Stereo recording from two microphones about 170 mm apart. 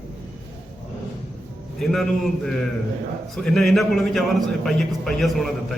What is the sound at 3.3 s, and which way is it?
A man's voice, centre (ahead or behind).